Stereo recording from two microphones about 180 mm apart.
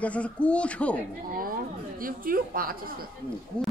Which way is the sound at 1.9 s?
50° right (ahead or behind).